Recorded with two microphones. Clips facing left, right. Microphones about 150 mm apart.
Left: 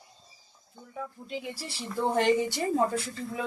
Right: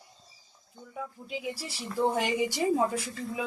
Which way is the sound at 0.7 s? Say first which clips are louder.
Even; centre (ahead or behind).